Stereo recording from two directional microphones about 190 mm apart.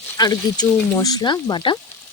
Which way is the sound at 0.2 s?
20° left (ahead or behind).